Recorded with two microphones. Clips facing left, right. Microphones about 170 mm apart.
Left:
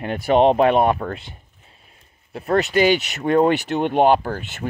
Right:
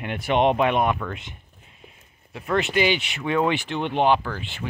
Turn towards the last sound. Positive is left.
turn(degrees=45)  # may be behind; listen again after turning